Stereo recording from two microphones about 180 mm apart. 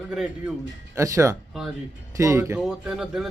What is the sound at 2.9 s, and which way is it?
Speech, 5° right (ahead or behind).